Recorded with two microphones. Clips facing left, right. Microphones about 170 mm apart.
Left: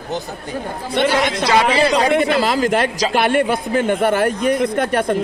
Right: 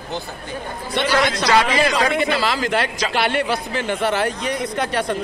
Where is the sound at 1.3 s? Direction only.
30° left (ahead or behind).